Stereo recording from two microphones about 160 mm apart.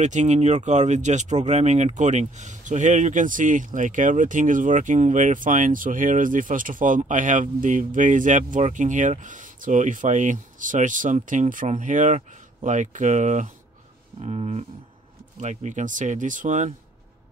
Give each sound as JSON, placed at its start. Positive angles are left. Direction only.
{"t": 0.0, "sound": "speech", "side_deg": -50}
{"t": 14.2, "sound": "a sound", "side_deg": -40}
{"t": 15.4, "sound": "speech", "side_deg": -50}